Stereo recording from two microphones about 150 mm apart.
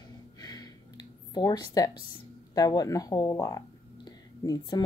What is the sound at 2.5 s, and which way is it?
Speech, 25° left (ahead or behind).